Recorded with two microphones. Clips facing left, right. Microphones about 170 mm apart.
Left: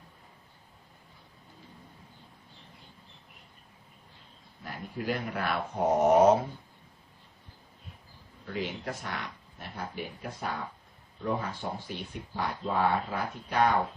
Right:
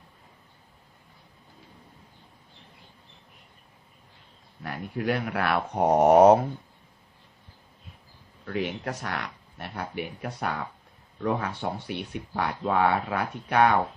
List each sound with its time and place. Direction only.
4.6 s speech: 70° right (ahead or behind)
8.4 s speech: 65° right (ahead or behind)